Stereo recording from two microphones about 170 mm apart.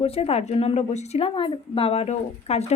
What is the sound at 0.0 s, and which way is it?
A woman's voice, 35° left (ahead or behind).